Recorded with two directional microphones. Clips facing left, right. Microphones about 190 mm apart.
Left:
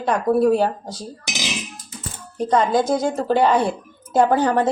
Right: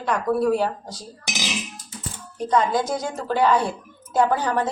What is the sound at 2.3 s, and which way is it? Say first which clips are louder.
A woman's voice: left 3 dB; 30° left (ahead or behind).